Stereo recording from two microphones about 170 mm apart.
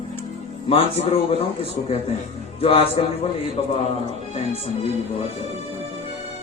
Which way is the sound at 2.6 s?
35° left (ahead or behind).